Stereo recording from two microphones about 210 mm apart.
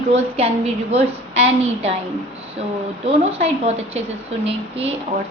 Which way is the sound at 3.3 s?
30° right (ahead or behind).